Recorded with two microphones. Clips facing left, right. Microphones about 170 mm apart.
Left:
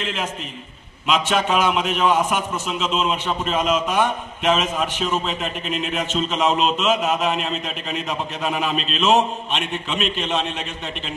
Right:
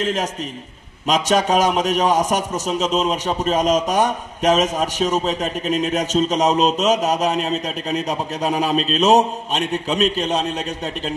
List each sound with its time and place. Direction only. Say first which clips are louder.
0.0 s a man's voice: right 5 dB; 40° right (ahead or behind)